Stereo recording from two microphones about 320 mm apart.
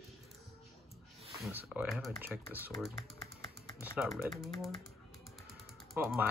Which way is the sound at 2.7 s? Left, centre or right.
Centre.